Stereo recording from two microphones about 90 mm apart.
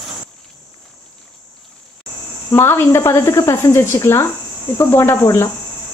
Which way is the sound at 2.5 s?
25° left (ahead or behind).